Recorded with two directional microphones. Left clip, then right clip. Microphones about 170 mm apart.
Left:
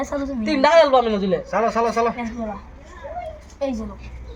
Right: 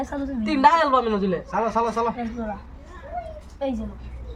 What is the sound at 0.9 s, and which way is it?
Speech, 20° left (ahead or behind).